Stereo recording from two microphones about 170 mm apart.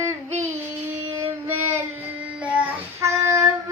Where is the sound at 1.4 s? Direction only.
15° right (ahead or behind).